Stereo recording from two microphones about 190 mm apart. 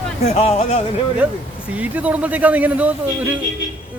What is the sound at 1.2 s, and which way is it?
Speech, 5° right (ahead or behind).